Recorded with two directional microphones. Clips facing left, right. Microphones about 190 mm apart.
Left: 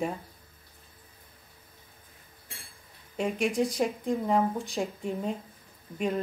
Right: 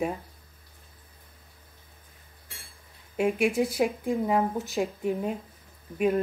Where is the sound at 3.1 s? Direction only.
5° right (ahead or behind).